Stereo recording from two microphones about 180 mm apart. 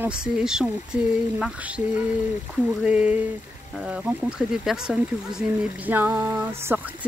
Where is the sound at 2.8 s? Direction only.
5° right (ahead or behind).